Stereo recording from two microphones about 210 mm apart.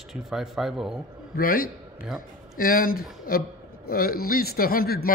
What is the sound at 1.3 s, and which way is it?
A man's voice, 45° left (ahead or behind).